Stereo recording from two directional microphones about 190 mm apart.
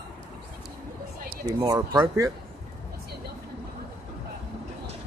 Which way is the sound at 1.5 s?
20° right (ahead or behind).